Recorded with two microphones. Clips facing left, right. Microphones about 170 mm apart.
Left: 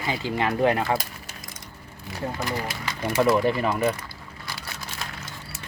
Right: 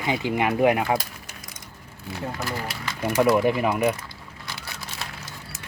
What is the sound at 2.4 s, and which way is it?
Speech, 15° left (ahead or behind).